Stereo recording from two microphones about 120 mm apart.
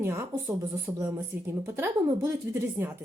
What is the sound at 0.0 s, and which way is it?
A woman's voice, 20° right (ahead or behind).